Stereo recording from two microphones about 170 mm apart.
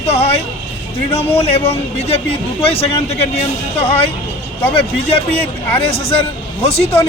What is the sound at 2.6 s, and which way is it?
Speech, 35° left (ahead or behind).